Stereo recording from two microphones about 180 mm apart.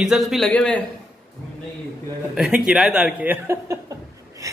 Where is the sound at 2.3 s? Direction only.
5° right (ahead or behind).